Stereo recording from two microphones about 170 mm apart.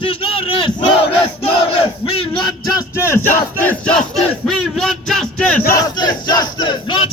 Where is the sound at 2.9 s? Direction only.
15° left (ahead or behind).